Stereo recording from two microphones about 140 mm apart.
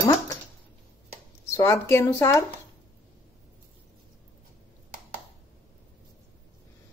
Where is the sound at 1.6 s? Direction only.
20° left (ahead or behind).